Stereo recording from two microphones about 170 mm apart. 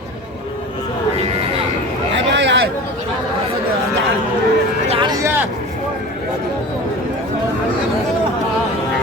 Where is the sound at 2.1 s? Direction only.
90° right.